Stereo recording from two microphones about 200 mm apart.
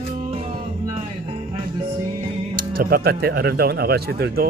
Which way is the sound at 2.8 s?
50° right (ahead or behind).